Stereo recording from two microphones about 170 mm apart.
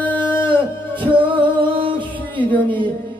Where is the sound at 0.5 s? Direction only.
30° right (ahead or behind).